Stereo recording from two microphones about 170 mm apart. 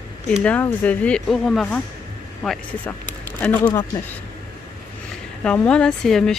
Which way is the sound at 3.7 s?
20° left (ahead or behind).